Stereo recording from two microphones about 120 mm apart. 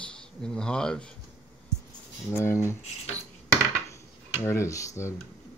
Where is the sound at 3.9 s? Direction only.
20° left (ahead or behind).